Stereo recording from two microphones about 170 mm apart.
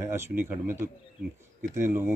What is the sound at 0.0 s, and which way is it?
Speech, 15° right (ahead or behind).